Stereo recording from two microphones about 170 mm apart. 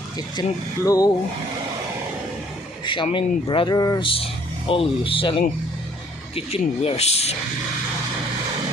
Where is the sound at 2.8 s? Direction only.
30° left (ahead or behind).